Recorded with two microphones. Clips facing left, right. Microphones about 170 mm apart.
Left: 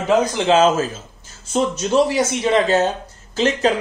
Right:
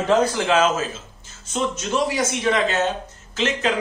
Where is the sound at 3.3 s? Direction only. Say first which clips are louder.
Left 5 dB; 35° left (ahead or behind).